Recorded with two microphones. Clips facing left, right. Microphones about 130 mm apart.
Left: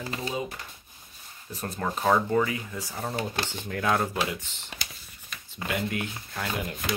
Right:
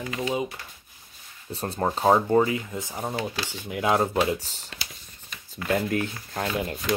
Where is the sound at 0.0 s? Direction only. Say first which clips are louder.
Right 3 dB; 35° left (ahead or behind).